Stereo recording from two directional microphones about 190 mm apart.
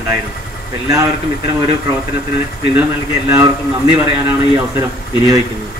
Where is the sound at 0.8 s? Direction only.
15° right (ahead or behind).